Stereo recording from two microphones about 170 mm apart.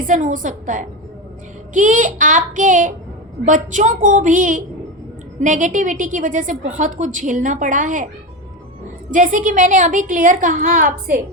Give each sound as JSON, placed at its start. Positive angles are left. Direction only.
{"t": 0.0, "sound": "a woman's voice", "side_deg": -50}